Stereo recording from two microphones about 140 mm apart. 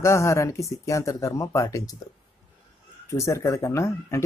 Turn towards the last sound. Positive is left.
turn(degrees=20)  # may be behind; listen again after turning